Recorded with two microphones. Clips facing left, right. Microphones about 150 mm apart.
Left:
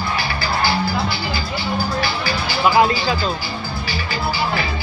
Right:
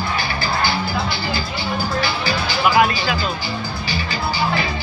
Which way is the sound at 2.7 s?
25° left (ahead or behind).